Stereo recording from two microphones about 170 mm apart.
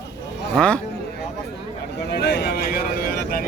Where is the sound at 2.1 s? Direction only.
75° left (ahead or behind).